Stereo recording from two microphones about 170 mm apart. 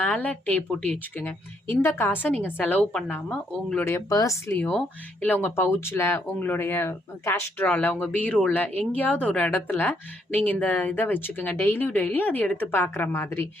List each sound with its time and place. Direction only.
0.0 s a woman's voice: 10° left (ahead or behind)
3.8 s a woman's voice: 15° left (ahead or behind)
4.5 s a woman's voice: 5° left (ahead or behind)